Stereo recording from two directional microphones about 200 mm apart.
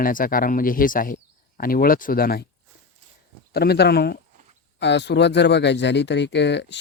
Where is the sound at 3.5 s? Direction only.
55° left (ahead or behind).